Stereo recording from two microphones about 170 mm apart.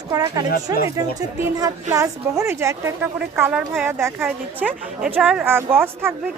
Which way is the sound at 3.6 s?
5° right (ahead or behind).